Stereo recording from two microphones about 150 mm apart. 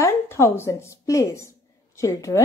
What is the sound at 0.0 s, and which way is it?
A woman's voice, 15° left (ahead or behind).